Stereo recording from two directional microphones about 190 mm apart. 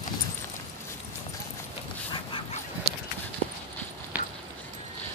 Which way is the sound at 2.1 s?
25° left (ahead or behind).